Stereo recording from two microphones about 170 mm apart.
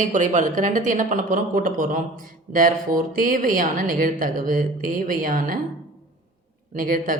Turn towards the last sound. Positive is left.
turn(degrees=-55)  # may be behind; listen again after turning